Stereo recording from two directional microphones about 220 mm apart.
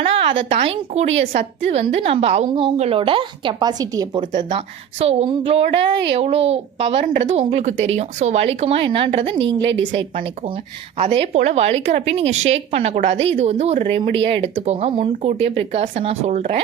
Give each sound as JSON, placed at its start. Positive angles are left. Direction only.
{"t": 0.0, "sound": "a woman's voice", "side_deg": -25}